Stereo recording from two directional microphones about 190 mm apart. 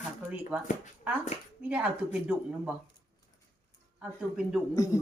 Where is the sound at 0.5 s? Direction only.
5° right (ahead or behind).